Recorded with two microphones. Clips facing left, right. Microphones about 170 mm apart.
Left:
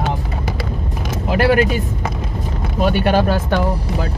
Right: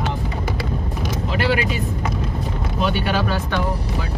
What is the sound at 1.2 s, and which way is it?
Vehicle, 50° left (ahead or behind).